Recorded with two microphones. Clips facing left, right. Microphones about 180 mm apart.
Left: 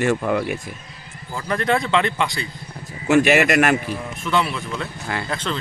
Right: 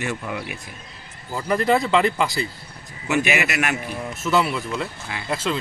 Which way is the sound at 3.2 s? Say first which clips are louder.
Left 7 dB; 45° left (ahead or behind).